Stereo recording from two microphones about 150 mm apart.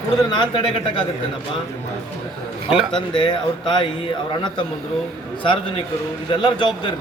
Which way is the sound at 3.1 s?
35° left (ahead or behind).